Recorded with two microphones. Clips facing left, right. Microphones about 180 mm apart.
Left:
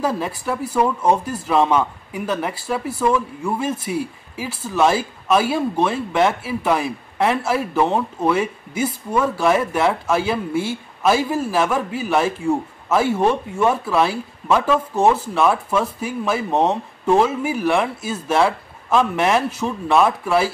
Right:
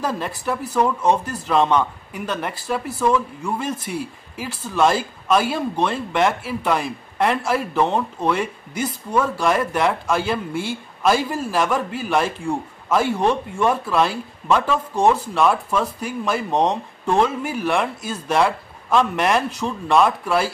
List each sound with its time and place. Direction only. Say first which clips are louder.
0.0 s speech: left 2 dB; 10° left (ahead or behind)